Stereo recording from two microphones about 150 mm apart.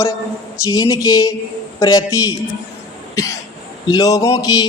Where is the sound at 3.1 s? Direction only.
20° left (ahead or behind).